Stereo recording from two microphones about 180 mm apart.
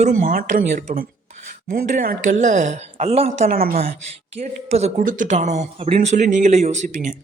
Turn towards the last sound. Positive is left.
turn(degrees=-45)  # may be behind; listen again after turning